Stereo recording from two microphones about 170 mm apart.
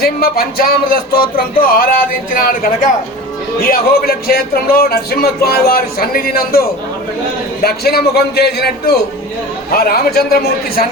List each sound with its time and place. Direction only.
0.0 s a man's voice: 60° left (ahead or behind)